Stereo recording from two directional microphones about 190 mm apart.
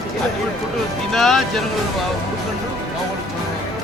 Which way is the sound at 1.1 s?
Centre (ahead or behind).